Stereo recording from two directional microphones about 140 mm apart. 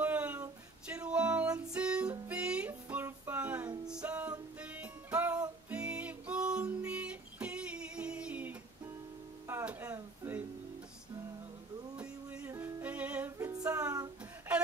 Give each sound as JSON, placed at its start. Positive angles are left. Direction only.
{"t": 0.0, "sound": "music", "side_deg": -10}
{"t": 9.5, "sound": "a sound", "side_deg": -15}
{"t": 12.0, "sound": "music", "side_deg": -10}
{"t": 13.5, "sound": "music", "side_deg": -25}